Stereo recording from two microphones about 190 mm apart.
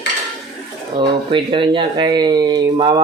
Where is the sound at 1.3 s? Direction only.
25° right (ahead or behind).